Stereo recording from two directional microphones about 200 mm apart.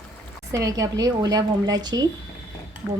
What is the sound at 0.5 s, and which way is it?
A woman's voice, 15° right (ahead or behind).